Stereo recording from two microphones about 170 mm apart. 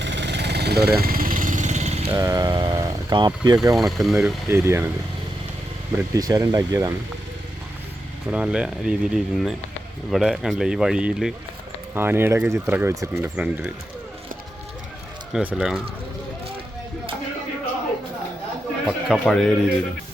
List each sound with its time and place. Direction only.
0.0 s vehicle: 90° right; by 2.1 s 40° right (ahead or behind)
2.1 s speech: 20° right (ahead or behind)
3.8 s speech: centre (ahead or behind)
4.4 s speech: 15° right (ahead or behind)
6.1 s speech: 20° right (ahead or behind)
8.3 s speech: 5° right (ahead or behind)
15.3 s speech: 5° right (ahead or behind)
18.9 s speech: centre (ahead or behind)